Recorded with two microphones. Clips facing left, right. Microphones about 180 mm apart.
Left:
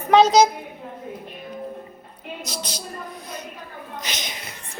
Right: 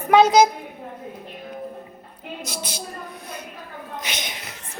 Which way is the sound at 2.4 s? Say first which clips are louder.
Right 1 dB; 50° right (ahead or behind).